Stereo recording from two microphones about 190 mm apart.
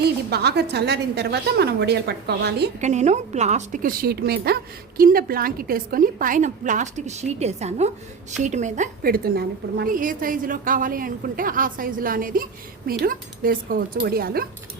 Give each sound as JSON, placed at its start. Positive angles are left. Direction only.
{"t": 0.0, "sound": "a woman's voice", "side_deg": -60}
{"t": 2.8, "sound": "a woman's voice", "side_deg": -35}